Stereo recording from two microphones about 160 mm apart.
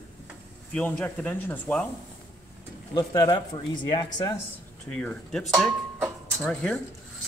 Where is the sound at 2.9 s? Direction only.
25° left (ahead or behind).